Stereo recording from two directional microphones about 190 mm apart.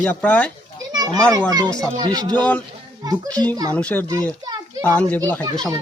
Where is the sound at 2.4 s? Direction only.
5° left (ahead or behind).